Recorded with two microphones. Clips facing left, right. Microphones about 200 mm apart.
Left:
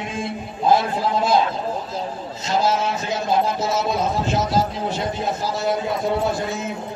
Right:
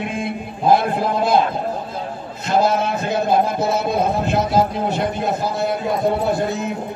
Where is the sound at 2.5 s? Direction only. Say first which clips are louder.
Right 3 dB; 55° right (ahead or behind).